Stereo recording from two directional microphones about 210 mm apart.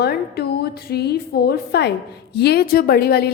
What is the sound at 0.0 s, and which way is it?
A woman's voice, 50° left (ahead or behind).